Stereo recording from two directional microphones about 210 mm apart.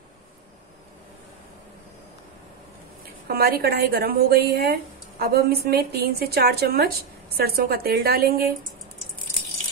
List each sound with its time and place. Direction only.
3.3 s a woman's voice: 45° right (ahead or behind)